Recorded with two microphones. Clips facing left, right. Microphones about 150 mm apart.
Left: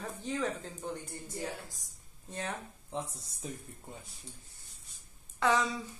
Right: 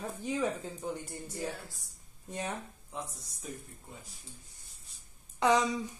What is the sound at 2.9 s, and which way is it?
Speech, 25° left (ahead or behind).